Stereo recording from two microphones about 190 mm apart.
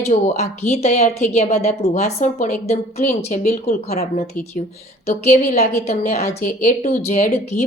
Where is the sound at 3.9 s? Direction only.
35° left (ahead or behind).